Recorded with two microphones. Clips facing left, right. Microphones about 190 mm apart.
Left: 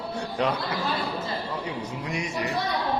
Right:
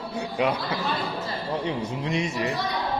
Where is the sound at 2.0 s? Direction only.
25° right (ahead or behind).